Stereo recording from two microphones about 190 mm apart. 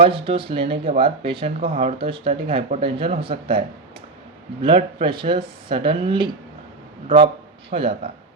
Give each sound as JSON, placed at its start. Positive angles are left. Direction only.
{"t": 0.0, "sound": "speech", "side_deg": -30}
{"t": 4.6, "sound": "speech", "side_deg": -25}
{"t": 7.8, "sound": "speech", "side_deg": -30}